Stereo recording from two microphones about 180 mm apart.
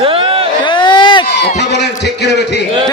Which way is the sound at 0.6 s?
25° left (ahead or behind).